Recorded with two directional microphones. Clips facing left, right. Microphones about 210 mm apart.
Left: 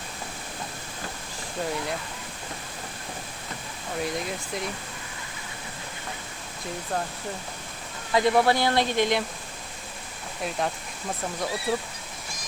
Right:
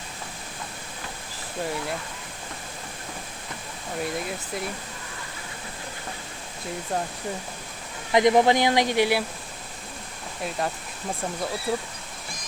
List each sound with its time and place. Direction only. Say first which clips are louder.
3.9 s speech: even; centre (ahead or behind)
8.1 s speech: right 3 dB; 15° right (ahead or behind)
10.6 s speech: right 1 dB; centre (ahead or behind)